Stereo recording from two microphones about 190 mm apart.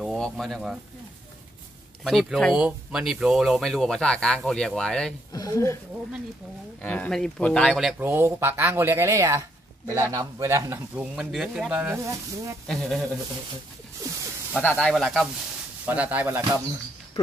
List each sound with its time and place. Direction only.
0.0 s speech: centre (ahead or behind)
2.0 s speech: centre (ahead or behind)
5.3 s speech: 20° left (ahead or behind)
6.8 s speech: 10° left (ahead or behind)
8.0 s speech: 10° right (ahead or behind)
11.1 s speech: 5° right (ahead or behind)
12.6 s speech: centre (ahead or behind)
14.5 s speech: 5° left (ahead or behind); by 16.6 s 10° right (ahead or behind)